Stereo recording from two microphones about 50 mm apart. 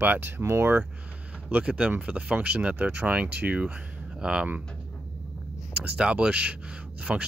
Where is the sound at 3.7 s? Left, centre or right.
Centre.